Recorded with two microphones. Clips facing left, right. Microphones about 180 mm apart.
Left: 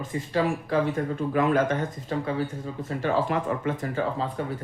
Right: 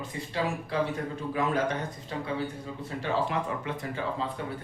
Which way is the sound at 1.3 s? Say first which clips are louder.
Left 5 dB; 55° left (ahead or behind).